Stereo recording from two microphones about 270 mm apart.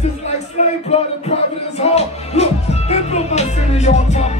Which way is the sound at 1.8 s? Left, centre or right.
Left.